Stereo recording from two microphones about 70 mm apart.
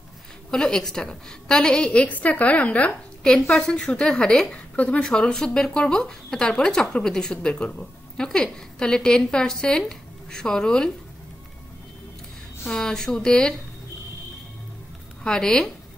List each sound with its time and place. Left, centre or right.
0.5 s speech: centre
12.6 s speech: centre
15.2 s speech: centre